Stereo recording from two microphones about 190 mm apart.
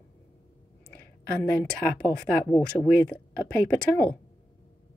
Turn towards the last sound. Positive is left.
turn(degrees=10)  # may be behind; listen again after turning